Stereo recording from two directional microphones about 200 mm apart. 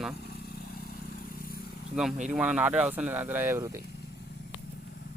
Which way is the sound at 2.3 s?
5° right (ahead or behind).